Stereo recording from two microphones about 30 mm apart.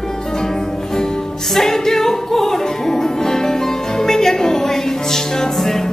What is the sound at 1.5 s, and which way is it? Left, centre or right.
Music, centre.